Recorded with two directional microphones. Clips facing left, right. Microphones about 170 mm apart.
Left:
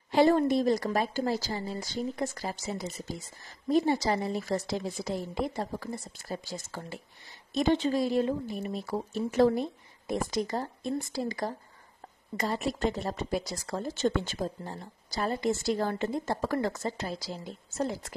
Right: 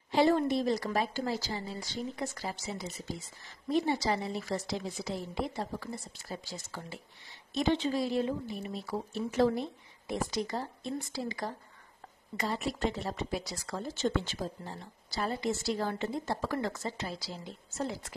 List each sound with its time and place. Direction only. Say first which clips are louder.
0.1 s a woman's voice: left 3 dB; 50° left (ahead or behind)